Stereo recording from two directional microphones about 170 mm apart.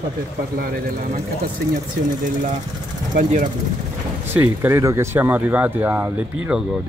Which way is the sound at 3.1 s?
50° right (ahead or behind).